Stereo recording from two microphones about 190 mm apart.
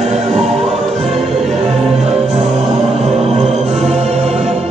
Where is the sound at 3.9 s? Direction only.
35° right (ahead or behind).